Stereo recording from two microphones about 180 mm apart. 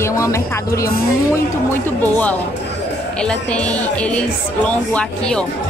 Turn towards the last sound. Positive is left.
turn(degrees=5)  # may be behind; listen again after turning